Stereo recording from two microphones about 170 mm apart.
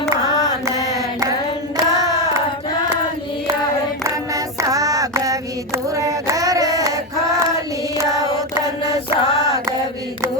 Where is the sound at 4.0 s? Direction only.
20° right (ahead or behind).